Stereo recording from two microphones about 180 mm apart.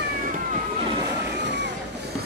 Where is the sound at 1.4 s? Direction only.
75° right (ahead or behind).